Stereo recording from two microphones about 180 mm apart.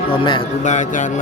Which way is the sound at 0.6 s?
40° left (ahead or behind).